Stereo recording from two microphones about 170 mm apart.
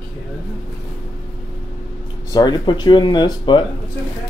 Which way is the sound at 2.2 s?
25° left (ahead or behind).